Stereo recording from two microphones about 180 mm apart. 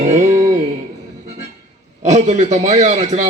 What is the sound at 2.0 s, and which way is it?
Speech, 40° right (ahead or behind).